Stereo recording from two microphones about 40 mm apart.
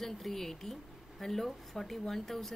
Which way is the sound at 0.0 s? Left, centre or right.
Centre.